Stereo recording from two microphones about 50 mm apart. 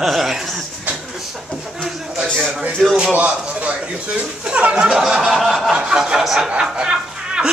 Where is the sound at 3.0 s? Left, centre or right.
Right.